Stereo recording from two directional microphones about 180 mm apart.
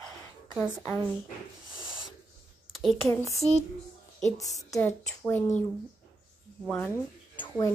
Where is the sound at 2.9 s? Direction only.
Centre (ahead or behind).